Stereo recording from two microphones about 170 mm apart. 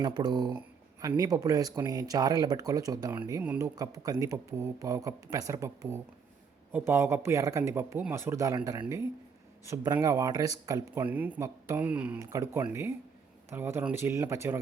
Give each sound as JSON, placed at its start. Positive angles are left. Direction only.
{"t": 0.0, "sound": "speech", "side_deg": -25}
{"t": 3.4, "sound": "speech", "side_deg": -10}
{"t": 3.8, "sound": "speech", "side_deg": -20}